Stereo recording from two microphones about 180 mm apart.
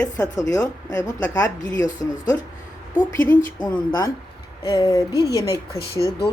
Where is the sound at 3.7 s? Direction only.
15° left (ahead or behind).